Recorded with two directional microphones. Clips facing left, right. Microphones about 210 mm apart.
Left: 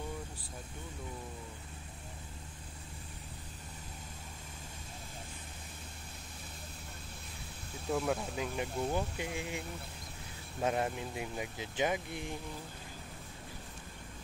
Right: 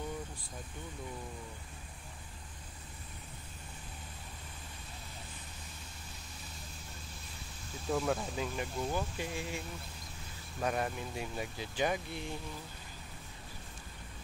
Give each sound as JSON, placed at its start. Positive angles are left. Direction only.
{"t": 7.9, "sound": "speech", "side_deg": 5}
{"t": 8.5, "sound": "speech", "side_deg": 20}